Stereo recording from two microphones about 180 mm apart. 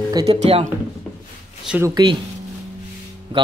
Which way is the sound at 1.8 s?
25° right (ahead or behind).